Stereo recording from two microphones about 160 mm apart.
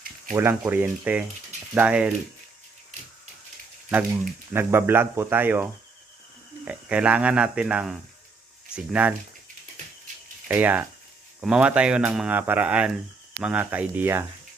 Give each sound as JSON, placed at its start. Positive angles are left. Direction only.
{"t": 0.3, "sound": "speech", "side_deg": -15}
{"t": 2.9, "sound": "a sound", "side_deg": -50}
{"t": 4.5, "sound": "speech", "side_deg": -15}
{"t": 6.7, "sound": "speech", "side_deg": -10}
{"t": 10.5, "sound": "speech", "side_deg": -10}